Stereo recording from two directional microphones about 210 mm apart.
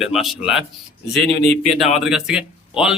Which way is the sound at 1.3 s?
25° right (ahead or behind).